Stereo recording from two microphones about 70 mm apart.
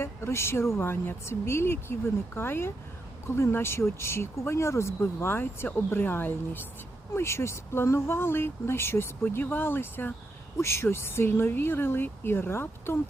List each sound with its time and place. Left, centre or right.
0.0 s speech: left
10.6 s speech: left